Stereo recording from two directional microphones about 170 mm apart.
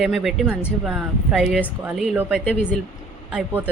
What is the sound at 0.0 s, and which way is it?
A woman's voice, centre (ahead or behind).